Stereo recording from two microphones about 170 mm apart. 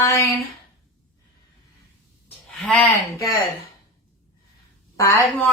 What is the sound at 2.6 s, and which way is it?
Speech, 5° left (ahead or behind).